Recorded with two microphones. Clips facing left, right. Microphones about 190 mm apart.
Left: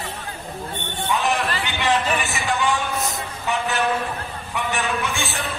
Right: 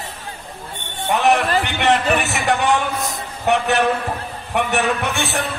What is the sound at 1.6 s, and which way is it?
Speech, 65° right (ahead or behind).